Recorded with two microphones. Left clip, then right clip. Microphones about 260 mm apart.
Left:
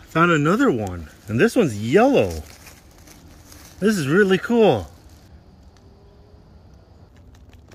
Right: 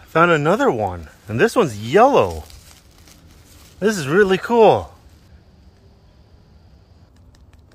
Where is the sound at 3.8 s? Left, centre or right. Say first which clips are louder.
Right 2 dB; centre.